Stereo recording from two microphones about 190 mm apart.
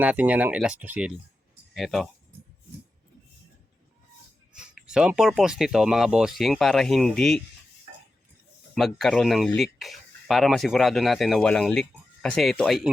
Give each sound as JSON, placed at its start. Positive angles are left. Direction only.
{"t": 0.0, "sound": "speech", "side_deg": -10}
{"t": 4.5, "sound": "speech", "side_deg": -5}
{"t": 8.7, "sound": "speech", "side_deg": 0}